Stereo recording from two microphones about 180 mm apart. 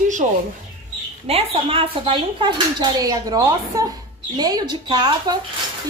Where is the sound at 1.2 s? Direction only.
30° right (ahead or behind).